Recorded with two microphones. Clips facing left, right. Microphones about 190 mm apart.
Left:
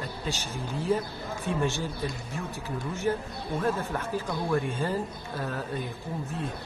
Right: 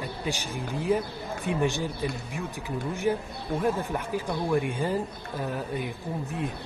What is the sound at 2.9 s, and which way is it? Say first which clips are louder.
A man's voice: right 1 dB; 15° right (ahead or behind).